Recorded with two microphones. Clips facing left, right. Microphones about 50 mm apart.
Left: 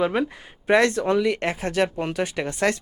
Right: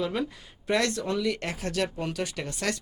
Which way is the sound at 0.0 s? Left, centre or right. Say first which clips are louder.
Left 7 dB; left.